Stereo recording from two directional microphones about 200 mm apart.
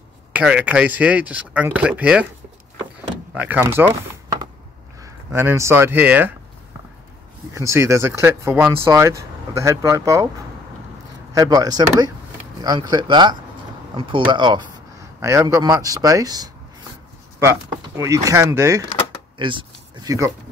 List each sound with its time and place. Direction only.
0.3 s speech: 5° right (ahead or behind)
3.3 s speech: 10° right (ahead or behind)
5.0 s speech: 10° right (ahead or behind)
7.5 s speech: 15° right (ahead or behind)
11.3 s a man's voice: 20° right (ahead or behind)
19.3 s speech: 25° right (ahead or behind)